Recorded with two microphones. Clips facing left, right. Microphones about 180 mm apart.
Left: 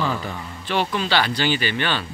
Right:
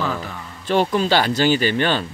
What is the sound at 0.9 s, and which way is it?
Speech, 45° right (ahead or behind).